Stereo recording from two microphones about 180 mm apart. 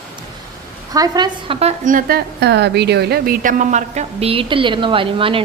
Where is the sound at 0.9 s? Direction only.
20° right (ahead or behind).